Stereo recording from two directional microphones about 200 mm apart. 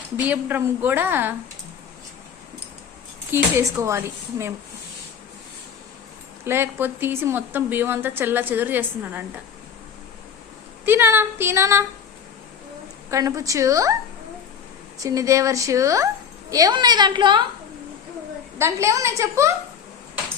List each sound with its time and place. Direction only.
0.3 s a woman's voice: 10° right (ahead or behind)
3.3 s a woman's voice: 15° right (ahead or behind)
6.4 s a woman's voice: 10° right (ahead or behind)
10.8 s a woman's voice: 10° right (ahead or behind)
13.1 s a woman's voice: 15° right (ahead or behind)
14.9 s a woman's voice: 15° right (ahead or behind)
18.6 s a woman's voice: 15° right (ahead or behind)